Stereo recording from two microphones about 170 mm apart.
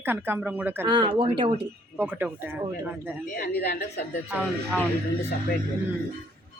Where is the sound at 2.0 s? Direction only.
10° right (ahead or behind).